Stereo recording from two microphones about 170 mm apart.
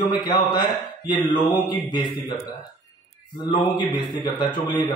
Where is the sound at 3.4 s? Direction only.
25° left (ahead or behind).